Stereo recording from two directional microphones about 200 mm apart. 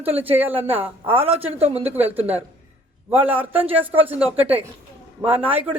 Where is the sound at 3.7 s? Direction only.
30° right (ahead or behind).